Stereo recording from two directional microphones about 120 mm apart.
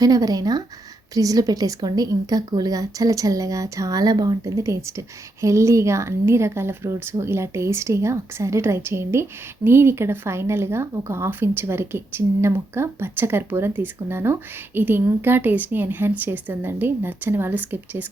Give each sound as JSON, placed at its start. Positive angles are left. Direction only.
{"t": 0.0, "sound": "a woman's voice", "side_deg": -30}